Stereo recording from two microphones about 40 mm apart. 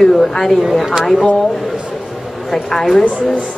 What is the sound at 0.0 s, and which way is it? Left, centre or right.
Speech, centre.